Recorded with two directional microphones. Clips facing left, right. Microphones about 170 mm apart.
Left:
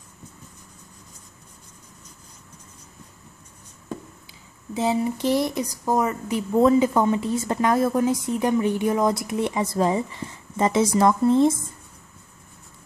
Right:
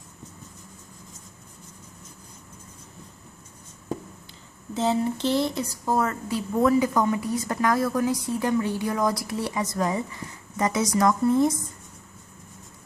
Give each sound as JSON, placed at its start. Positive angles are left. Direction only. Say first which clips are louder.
{"t": 4.7, "sound": "a woman's voice", "louder": "left 1 dB", "side_deg": 10}